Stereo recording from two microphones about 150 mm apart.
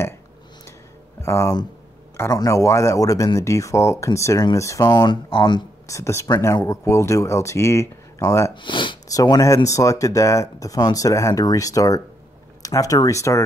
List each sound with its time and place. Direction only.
1.2 s speech: 20° left (ahead or behind)
8.5 s speech: 30° left (ahead or behind)